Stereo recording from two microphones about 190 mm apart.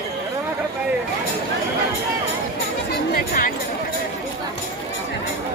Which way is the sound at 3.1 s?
50° left (ahead or behind).